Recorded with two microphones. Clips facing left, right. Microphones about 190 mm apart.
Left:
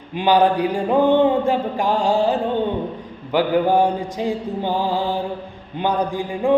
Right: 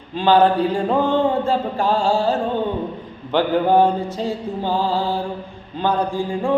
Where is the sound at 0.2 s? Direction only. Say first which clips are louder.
Right 1 dB; 15° left (ahead or behind).